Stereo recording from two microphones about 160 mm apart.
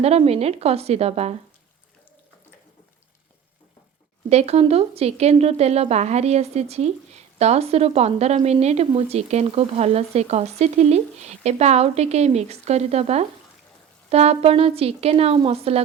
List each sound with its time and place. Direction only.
0.0 s speech: 40° right (ahead or behind)
4.3 s speech: 40° right (ahead or behind)